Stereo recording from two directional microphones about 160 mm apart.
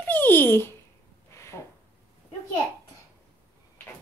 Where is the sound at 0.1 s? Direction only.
10° left (ahead or behind).